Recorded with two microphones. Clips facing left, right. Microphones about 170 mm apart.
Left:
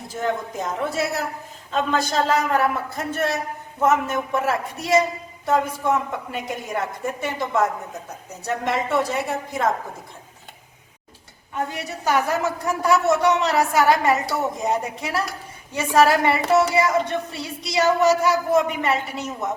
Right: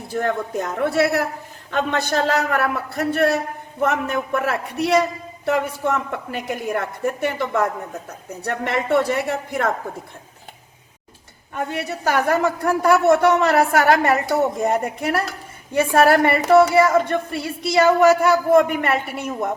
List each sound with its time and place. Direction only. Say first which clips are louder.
0.1 s a woman's voice: right 3 dB; 65° right (ahead or behind)
11.7 s a woman's voice: right 2 dB; 60° right (ahead or behind)